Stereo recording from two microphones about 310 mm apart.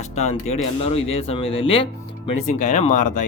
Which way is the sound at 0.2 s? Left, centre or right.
Left.